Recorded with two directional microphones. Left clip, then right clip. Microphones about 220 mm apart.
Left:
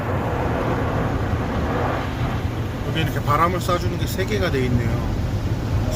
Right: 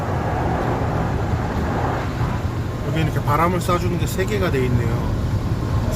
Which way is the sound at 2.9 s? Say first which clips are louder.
Even; 10° right (ahead or behind).